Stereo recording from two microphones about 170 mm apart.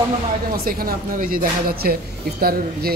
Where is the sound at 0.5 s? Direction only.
60° right (ahead or behind).